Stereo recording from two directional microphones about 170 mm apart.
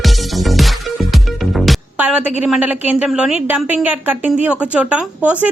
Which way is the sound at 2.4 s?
10° right (ahead or behind).